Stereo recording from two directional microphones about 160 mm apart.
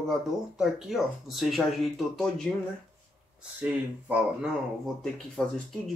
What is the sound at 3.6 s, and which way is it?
Speech, 10° right (ahead or behind).